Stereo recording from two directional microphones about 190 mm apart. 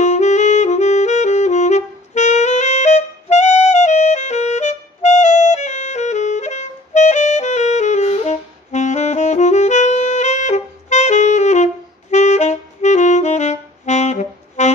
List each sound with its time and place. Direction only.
0.0 s saxophone: 35° left (ahead or behind)